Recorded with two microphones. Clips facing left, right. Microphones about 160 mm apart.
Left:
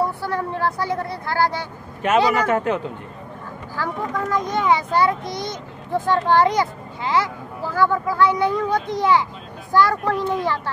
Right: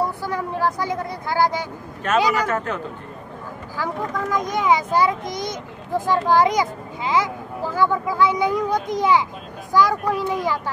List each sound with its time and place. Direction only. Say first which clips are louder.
0.2 s a child's voice: even; 15° right (ahead or behind)
2.0 s speech: left 2 dB; 15° left (ahead or behind)
3.7 s a child's voice: even; 15° right (ahead or behind)